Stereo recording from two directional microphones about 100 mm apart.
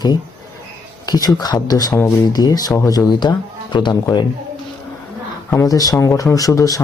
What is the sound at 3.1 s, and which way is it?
Speech, 45° left (ahead or behind).